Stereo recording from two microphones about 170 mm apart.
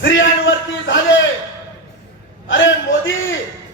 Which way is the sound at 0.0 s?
90° left.